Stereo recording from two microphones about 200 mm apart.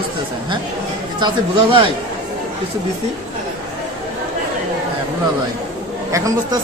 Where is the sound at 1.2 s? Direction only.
25° right (ahead or behind).